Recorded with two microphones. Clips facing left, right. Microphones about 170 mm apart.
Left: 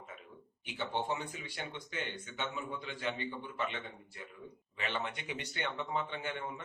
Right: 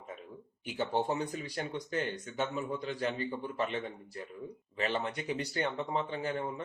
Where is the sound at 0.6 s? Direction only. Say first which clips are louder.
Right 5 dB; 40° right (ahead or behind).